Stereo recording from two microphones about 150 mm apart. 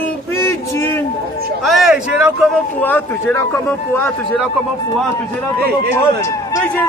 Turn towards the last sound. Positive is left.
turn(degrees=20)  # may be behind; listen again after turning